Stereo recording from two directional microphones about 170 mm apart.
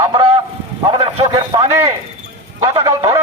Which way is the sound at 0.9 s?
35° right (ahead or behind).